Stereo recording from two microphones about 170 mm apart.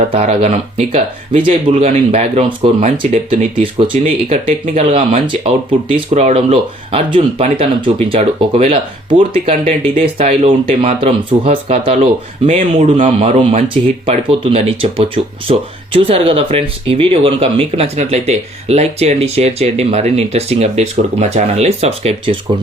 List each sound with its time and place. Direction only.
0.1 s speech: 40° right (ahead or behind)